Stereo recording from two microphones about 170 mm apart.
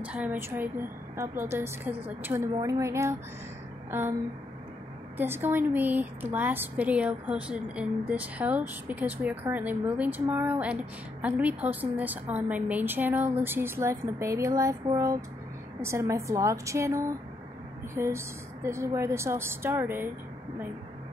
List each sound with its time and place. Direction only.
0.0 s a woman's voice: 10° right (ahead or behind)
5.1 s a woman's voice: 10° right (ahead or behind)